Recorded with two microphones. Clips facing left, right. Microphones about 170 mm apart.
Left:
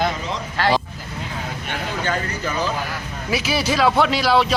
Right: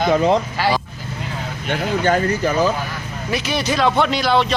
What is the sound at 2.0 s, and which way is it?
Speech, 45° right (ahead or behind).